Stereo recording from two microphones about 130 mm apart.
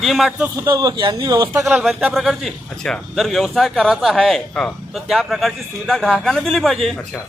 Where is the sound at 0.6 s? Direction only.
35° right (ahead or behind).